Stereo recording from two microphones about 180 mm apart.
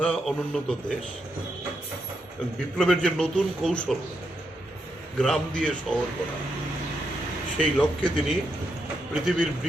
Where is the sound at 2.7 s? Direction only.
5° left (ahead or behind).